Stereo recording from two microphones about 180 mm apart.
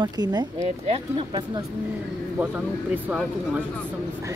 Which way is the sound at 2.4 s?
10° right (ahead or behind).